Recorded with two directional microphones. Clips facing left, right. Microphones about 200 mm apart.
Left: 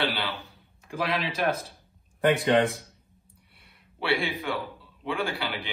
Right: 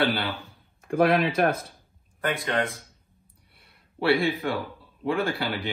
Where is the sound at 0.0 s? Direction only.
50° right (ahead or behind).